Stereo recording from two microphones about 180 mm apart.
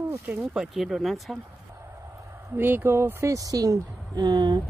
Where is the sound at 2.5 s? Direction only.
10° right (ahead or behind).